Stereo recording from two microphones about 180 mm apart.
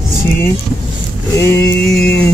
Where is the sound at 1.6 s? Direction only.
5° left (ahead or behind).